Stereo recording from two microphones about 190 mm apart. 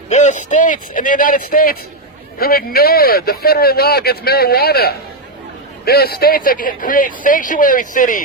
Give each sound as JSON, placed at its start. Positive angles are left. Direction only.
{"t": 0.1, "sound": "speech", "side_deg": 40}